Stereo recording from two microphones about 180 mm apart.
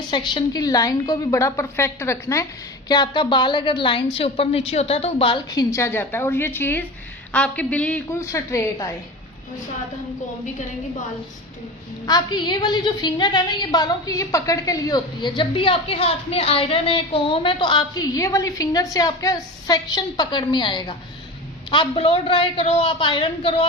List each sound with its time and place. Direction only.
0.1 s a woman's voice: 25° left (ahead or behind)
5.7 s a woman's voice: 15° left (ahead or behind)
12.0 s a woman's voice: 20° left (ahead or behind)